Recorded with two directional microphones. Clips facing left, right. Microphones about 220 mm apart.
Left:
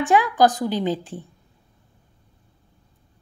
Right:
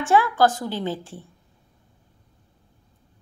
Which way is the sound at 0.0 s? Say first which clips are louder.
Left 1 dB; 15° left (ahead or behind).